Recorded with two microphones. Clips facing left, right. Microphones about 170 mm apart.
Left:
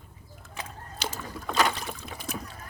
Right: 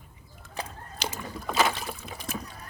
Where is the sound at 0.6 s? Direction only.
35° right (ahead or behind).